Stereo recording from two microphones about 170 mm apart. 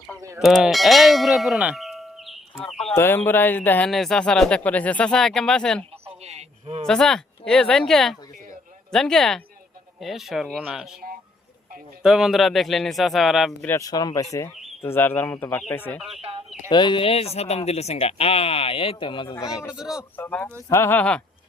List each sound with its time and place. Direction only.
0.3 s clang: centre (ahead or behind)
2.9 s speech: 15° left (ahead or behind)
6.1 s a sound: 40° right (ahead or behind)
6.8 s speech: 5° left (ahead or behind)
12.0 s speech: centre (ahead or behind)
13.7 s speech: 20° left (ahead or behind)
16.0 s speech: centre (ahead or behind)
16.6 s speech: 25° left (ahead or behind)
19.7 s speech: 5° right (ahead or behind)
20.1 s speech: 10° left (ahead or behind)